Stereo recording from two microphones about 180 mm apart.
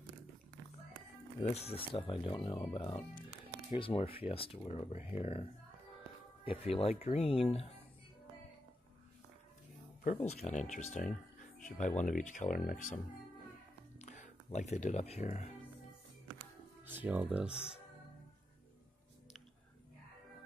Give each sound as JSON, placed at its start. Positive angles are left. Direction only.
{"t": 1.4, "sound": "speech", "side_deg": 35}
{"t": 10.0, "sound": "speech", "side_deg": 40}
{"t": 16.8, "sound": "speech", "side_deg": -10}